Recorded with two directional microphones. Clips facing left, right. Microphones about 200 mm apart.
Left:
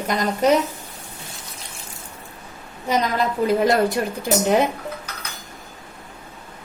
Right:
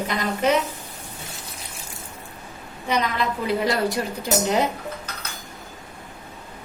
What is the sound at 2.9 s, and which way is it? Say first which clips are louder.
Speech: left 3 dB; 45° left (ahead or behind).